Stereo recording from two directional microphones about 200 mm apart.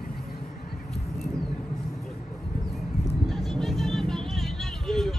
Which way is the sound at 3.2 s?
Centre (ahead or behind).